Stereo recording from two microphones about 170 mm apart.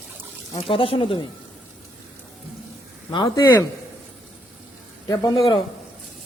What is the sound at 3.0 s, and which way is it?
Speech, 25° left (ahead or behind).